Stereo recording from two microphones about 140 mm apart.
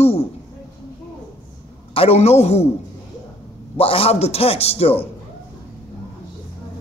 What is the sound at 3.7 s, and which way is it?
A man's voice, 45° left (ahead or behind).